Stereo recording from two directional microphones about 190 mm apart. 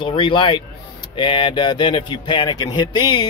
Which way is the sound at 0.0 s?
25° left (ahead or behind).